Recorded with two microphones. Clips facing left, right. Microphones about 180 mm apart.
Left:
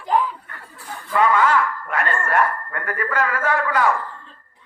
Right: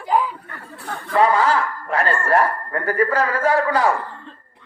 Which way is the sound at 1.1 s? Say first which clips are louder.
Right 1 dB; 35° right (ahead or behind).